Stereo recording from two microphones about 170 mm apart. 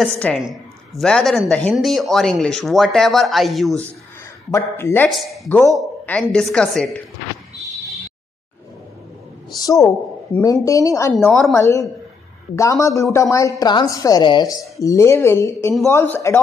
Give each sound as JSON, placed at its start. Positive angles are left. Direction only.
{"t": 0.0, "sound": "a woman's voice", "side_deg": 5}
{"t": 4.5, "sound": "speech", "side_deg": 15}
{"t": 5.1, "sound": "a woman's voice", "side_deg": 0}
{"t": 9.6, "sound": "a woman's voice", "side_deg": 20}